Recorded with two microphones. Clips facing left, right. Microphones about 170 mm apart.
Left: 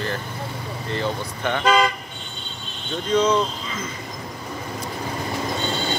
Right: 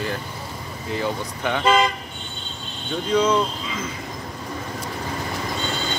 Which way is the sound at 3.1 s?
10° right (ahead or behind).